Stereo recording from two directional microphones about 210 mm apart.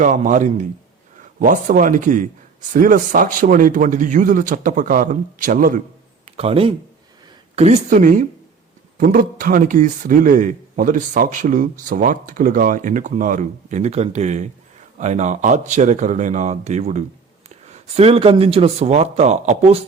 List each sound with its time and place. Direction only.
0.0 s a man's voice: 35° right (ahead or behind)
6.3 s a man's voice: 25° right (ahead or behind)